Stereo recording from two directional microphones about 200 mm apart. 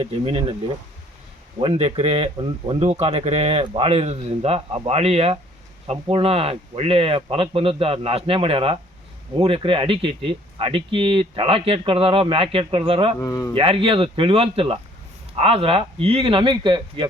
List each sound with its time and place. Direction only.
0.0 s a man's voice: 30° right (ahead or behind)
1.5 s a man's voice: 30° right (ahead or behind)
13.1 s speech: 15° left (ahead or behind)
13.6 s speech: 25° right (ahead or behind)